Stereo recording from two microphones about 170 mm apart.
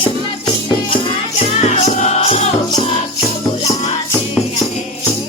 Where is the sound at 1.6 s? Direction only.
45° left (ahead or behind).